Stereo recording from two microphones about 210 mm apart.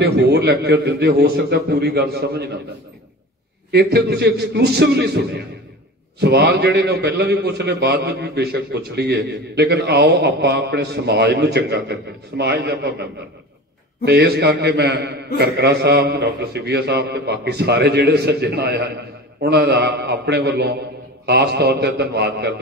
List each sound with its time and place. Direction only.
0.0 s a man's voice: 50° right (ahead or behind)
3.7 s a man's voice: 50° right (ahead or behind)